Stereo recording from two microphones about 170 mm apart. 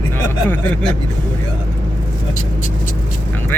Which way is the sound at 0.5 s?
10° left (ahead or behind).